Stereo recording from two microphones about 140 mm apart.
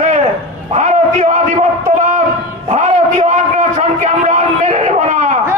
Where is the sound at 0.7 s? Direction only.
55° right (ahead or behind).